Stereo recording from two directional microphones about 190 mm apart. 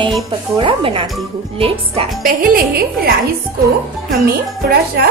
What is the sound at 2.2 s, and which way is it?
Speech, 50° right (ahead or behind).